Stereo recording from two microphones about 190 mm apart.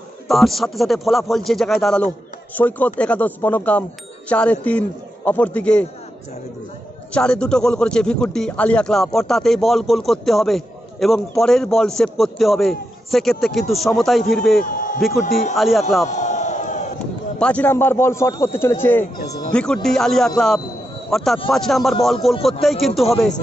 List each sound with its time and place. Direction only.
0.3 s a man's voice: centre (ahead or behind)
7.1 s a man's voice: 5° left (ahead or behind)
14.6 s a sound: 45° left (ahead or behind)
15.0 s a man's voice: centre (ahead or behind)
16.1 s a sound: 40° left (ahead or behind)
17.4 s a man's voice: 5° left (ahead or behind)